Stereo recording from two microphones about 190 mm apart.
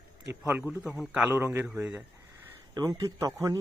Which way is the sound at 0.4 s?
10° right (ahead or behind).